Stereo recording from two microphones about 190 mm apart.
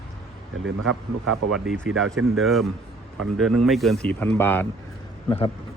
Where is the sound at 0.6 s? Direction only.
90° right.